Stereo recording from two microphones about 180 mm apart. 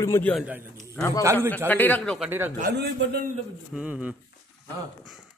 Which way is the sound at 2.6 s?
65° right (ahead or behind).